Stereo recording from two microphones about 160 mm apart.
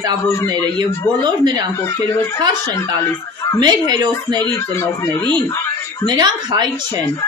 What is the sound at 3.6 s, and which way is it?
Speech, 25° right (ahead or behind).